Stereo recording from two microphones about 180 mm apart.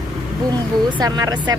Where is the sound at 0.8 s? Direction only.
25° right (ahead or behind).